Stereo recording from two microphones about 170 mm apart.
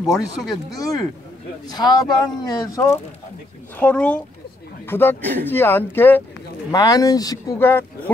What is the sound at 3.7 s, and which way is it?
Speech, 5° left (ahead or behind).